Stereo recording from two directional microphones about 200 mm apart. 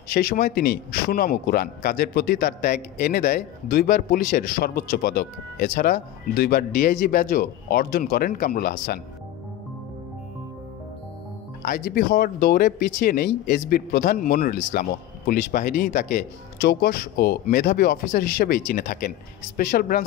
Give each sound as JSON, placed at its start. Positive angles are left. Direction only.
{"t": 0.1, "sound": "speech", "side_deg": 50}
{"t": 11.6, "sound": "speech", "side_deg": 50}